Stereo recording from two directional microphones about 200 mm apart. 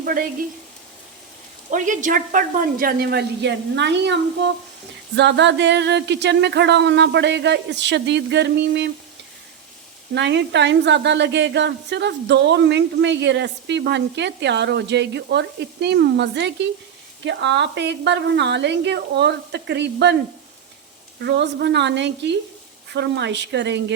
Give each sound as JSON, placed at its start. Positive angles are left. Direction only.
{"t": 0.0, "sound": "frying", "side_deg": -45}
{"t": 1.7, "sound": "a woman's voice", "side_deg": -40}
{"t": 10.2, "sound": "a woman's voice", "side_deg": -60}
{"t": 21.2, "sound": "a woman's voice", "side_deg": -60}